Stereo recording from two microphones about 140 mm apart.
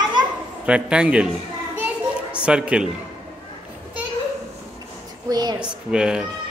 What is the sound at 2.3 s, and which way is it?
Speech, 5° right (ahead or behind).